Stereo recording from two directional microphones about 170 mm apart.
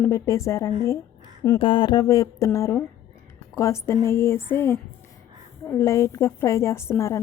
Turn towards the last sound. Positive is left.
turn(degrees=15)  # may be behind; listen again after turning